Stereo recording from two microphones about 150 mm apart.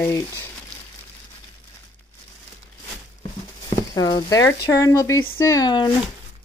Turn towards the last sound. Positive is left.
turn(degrees=30)  # may be behind; listen again after turning